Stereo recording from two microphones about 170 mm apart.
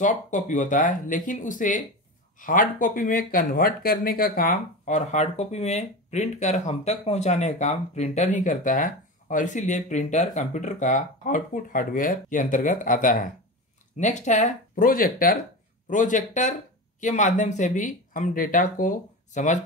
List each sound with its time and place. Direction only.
0.0 s speech: 50° left (ahead or behind)